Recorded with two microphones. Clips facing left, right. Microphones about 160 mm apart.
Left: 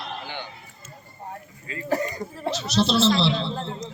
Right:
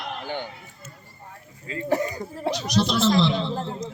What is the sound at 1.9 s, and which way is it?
Cough, 10° right (ahead or behind).